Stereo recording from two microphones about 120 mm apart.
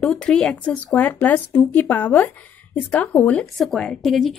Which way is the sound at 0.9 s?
15° left (ahead or behind).